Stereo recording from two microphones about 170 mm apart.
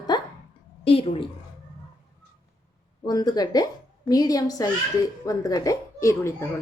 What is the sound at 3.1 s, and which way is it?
A child's voice, 20° left (ahead or behind).